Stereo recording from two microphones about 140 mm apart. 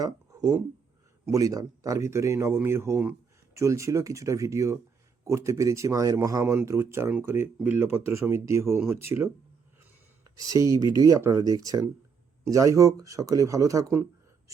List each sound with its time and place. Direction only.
0.0 s speech: 25° right (ahead or behind)
10.3 s speech: 25° right (ahead or behind)